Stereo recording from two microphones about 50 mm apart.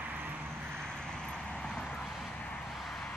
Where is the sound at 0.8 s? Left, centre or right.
Centre.